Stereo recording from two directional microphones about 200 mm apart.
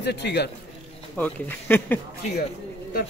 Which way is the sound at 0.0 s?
60° left (ahead or behind).